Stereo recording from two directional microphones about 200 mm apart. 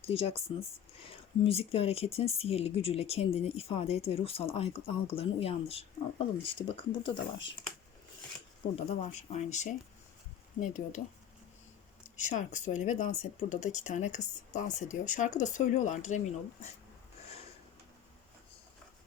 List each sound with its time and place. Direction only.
0.0 s speech: 30° left (ahead or behind)
8.7 s speech: 35° left (ahead or behind)
12.3 s speech: 40° left (ahead or behind)